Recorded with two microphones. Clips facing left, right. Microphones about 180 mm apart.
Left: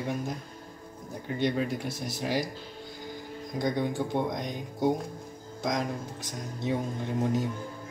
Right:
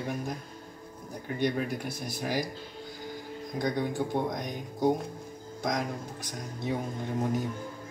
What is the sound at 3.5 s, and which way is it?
Speech, 20° left (ahead or behind).